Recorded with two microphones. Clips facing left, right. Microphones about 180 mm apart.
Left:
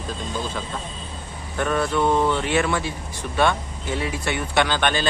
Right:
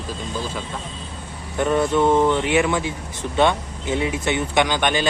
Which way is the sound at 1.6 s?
20° right (ahead or behind).